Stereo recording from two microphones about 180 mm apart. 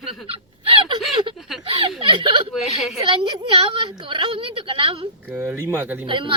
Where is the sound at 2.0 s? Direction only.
25° right (ahead or behind).